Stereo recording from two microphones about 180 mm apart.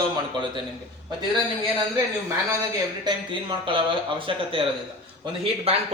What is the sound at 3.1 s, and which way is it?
Speech, 25° right (ahead or behind).